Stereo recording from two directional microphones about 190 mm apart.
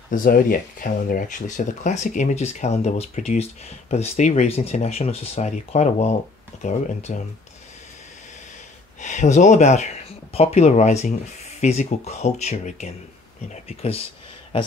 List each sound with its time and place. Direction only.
0.1 s speech: 50° left (ahead or behind)
6.5 s a sound: 40° left (ahead or behind)
7.1 s speech: 40° left (ahead or behind)
9.0 s speech: 40° left (ahead or behind)